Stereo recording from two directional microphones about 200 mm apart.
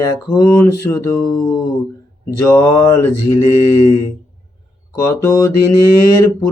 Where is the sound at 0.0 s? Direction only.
20° left (ahead or behind).